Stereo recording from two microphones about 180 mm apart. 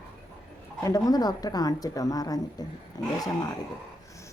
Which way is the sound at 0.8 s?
20° left (ahead or behind).